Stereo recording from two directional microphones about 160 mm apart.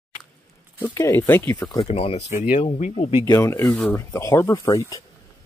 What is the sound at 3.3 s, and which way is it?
Speech, 20° left (ahead or behind).